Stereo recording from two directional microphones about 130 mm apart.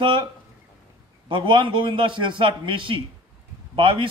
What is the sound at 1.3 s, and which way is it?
A man's voice, 40° right (ahead or behind).